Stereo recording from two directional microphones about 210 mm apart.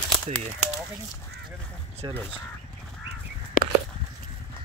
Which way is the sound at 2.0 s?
20° right (ahead or behind).